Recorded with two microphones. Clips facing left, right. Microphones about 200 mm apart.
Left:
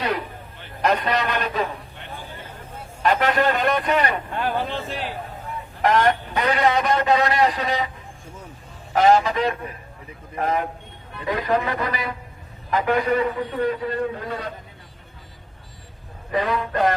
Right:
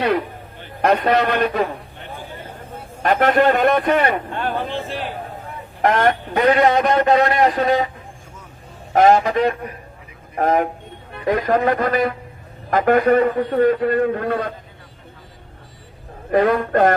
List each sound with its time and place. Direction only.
0.8 s a man's voice: 55° right (ahead or behind)
3.0 s a man's voice: 55° right (ahead or behind)
5.8 s a man's voice: 55° right (ahead or behind)
8.9 s a man's voice: 50° right (ahead or behind)
16.3 s a man's voice: 50° right (ahead or behind)